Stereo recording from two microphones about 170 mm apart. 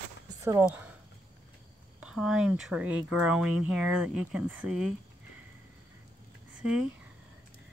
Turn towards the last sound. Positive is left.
turn(degrees=-5)  # may be behind; listen again after turning